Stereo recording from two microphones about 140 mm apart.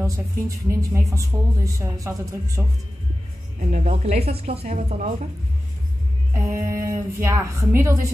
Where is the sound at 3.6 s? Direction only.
60° right (ahead or behind).